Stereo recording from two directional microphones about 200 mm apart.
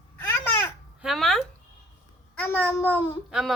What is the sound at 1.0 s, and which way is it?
A child's voice, centre (ahead or behind).